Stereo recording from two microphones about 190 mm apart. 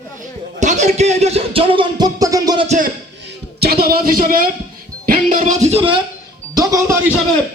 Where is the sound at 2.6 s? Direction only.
40° right (ahead or behind).